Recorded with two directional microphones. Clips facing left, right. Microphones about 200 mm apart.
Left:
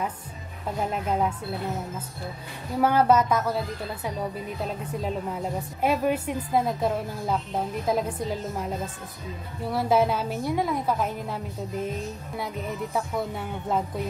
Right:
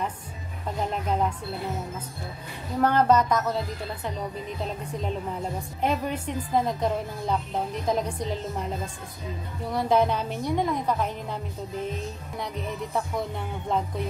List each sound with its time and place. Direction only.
0.7 s a woman's voice: 5° left (ahead or behind)
2.8 s a woman's voice: 10° left (ahead or behind)
9.7 s a woman's voice: 5° left (ahead or behind)